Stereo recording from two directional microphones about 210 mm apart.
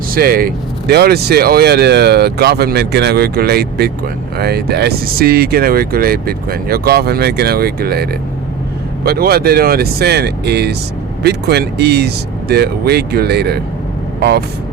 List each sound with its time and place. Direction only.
0.1 s speech: 45° right (ahead or behind)
9.0 s speech: 45° right (ahead or behind)